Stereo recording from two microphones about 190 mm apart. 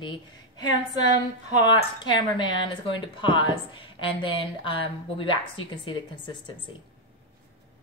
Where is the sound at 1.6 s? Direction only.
25° left (ahead or behind).